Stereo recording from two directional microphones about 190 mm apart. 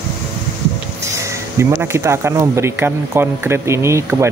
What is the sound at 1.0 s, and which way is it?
Speech, 15° right (ahead or behind).